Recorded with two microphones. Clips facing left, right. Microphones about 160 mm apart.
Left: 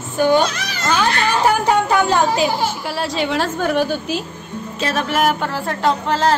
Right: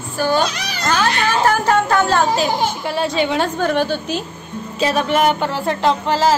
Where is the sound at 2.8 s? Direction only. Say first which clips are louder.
Right 3 dB; centre (ahead or behind).